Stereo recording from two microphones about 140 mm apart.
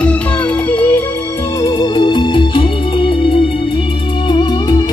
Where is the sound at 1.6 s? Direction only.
30° left (ahead or behind).